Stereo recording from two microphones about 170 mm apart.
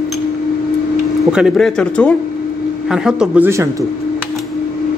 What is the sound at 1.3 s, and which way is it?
Speech, centre (ahead or behind).